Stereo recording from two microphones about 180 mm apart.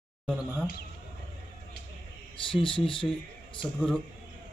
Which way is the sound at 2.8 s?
30° left (ahead or behind).